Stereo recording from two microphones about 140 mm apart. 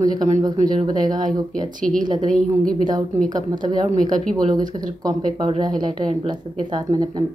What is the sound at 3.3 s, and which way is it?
A woman's voice, 30° right (ahead or behind).